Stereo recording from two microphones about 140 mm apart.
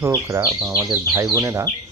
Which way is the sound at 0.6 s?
15° right (ahead or behind).